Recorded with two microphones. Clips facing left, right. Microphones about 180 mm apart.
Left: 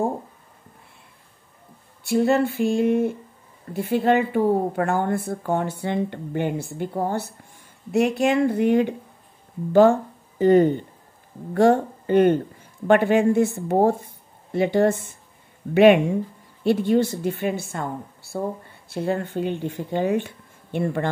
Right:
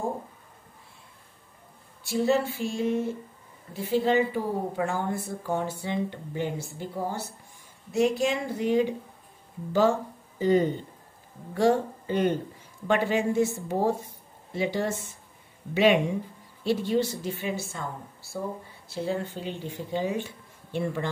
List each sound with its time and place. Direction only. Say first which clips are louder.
2.0 s a woman's voice: left 5 dB; 55° left (ahead or behind)
18.9 s a woman's voice: left 5 dB; 55° left (ahead or behind)